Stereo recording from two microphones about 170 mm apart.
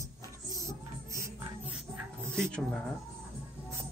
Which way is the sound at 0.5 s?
20° right (ahead or behind).